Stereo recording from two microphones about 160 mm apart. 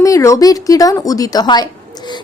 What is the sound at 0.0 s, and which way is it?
Speech, 20° left (ahead or behind).